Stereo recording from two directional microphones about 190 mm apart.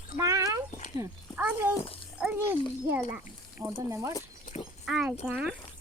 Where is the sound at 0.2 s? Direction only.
15° right (ahead or behind).